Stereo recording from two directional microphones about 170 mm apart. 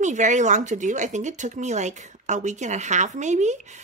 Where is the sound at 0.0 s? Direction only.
45° right (ahead or behind).